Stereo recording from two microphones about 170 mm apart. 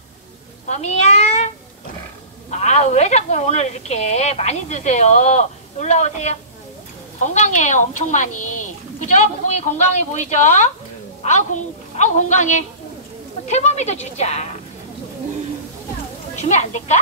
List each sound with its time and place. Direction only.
0.7 s meow: 40° left (ahead or behind)
2.5 s a woman's voice: 40° left (ahead or behind)
16.4 s a woman's voice: 45° left (ahead or behind)